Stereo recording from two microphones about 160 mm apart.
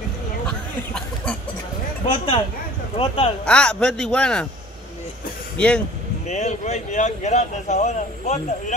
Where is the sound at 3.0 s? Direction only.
35° left (ahead or behind).